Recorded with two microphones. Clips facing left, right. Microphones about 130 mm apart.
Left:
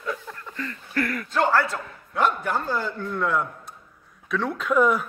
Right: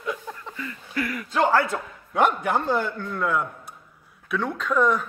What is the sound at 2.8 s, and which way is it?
Speech, centre (ahead or behind).